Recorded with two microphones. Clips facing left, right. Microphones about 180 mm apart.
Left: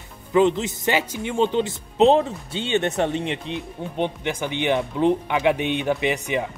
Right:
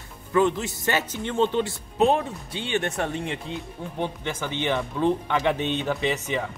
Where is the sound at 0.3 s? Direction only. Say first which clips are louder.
Left 4 dB; 20° left (ahead or behind).